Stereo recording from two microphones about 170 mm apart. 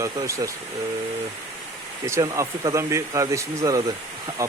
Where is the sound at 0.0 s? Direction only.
20° right (ahead or behind).